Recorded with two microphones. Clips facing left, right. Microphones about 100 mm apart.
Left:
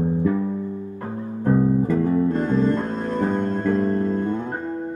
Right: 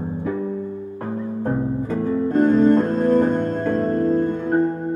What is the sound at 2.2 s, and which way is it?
Music, 50° right (ahead or behind).